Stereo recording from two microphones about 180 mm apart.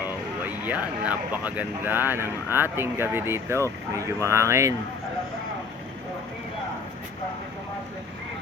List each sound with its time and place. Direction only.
0.0 s speech: 10° right (ahead or behind)